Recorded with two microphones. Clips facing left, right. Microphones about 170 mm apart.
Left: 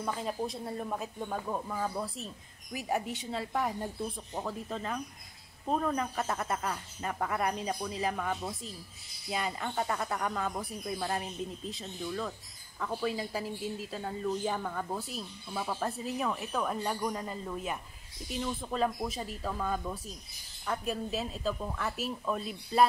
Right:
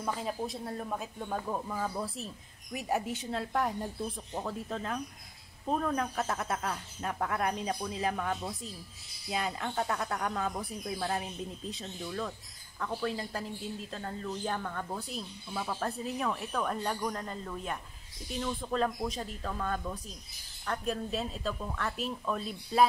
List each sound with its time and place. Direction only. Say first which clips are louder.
0.0 s a woman's voice: left 1 dB; centre (ahead or behind)